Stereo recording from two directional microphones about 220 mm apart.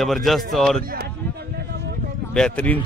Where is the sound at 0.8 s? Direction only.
40° right (ahead or behind).